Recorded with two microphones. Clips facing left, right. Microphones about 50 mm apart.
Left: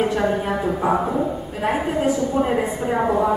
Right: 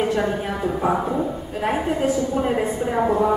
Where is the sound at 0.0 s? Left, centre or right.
Centre.